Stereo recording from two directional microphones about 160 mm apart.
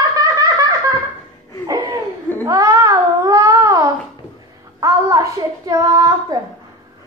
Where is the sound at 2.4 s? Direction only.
20° right (ahead or behind).